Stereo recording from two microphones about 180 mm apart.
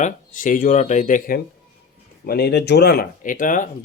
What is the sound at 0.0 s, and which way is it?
Speech, 50° left (ahead or behind).